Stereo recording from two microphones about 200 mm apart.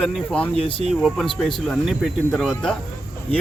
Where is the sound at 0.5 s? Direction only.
30° left (ahead or behind).